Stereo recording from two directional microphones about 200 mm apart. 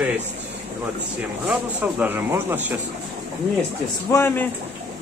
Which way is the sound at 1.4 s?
10° right (ahead or behind).